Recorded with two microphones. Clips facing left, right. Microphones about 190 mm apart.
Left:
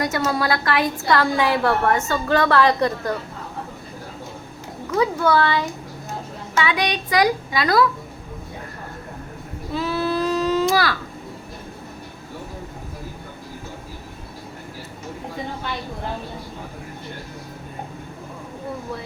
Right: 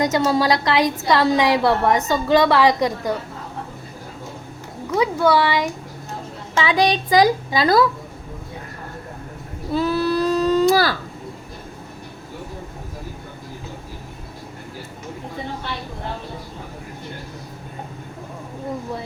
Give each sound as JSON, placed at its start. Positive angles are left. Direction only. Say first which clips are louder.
{"t": 0.0, "sound": "a woman's voice", "louder": "right 4 dB", "side_deg": -20}
{"t": 4.9, "sound": "a woman's voice", "louder": "right 1 dB", "side_deg": -15}
{"t": 6.6, "sound": "a child's voice", "louder": "right 4 dB", "side_deg": -30}
{"t": 9.7, "sound": "baby cry", "louder": "right 3 dB", "side_deg": -40}